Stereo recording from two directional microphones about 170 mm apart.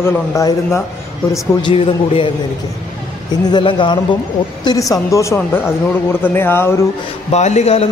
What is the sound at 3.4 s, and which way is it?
A woman's voice, 25° left (ahead or behind).